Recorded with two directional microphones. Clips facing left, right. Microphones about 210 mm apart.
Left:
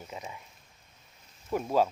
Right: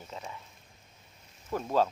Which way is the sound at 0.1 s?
15° left (ahead or behind).